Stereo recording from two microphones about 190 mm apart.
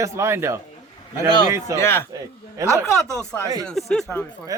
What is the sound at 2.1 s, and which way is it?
Speech, 15° right (ahead or behind).